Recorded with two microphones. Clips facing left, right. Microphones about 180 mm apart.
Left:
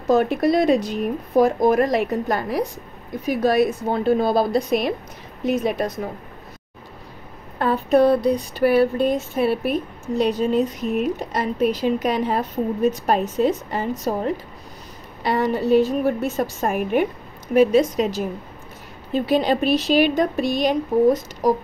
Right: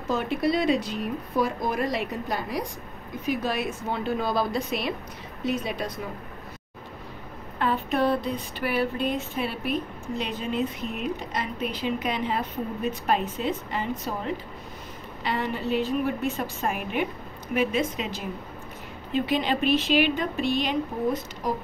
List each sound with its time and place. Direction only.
0.1 s speech: 45° left (ahead or behind)
7.5 s speech: 40° left (ahead or behind)